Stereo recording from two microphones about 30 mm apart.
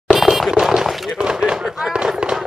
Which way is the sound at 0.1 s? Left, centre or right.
Centre.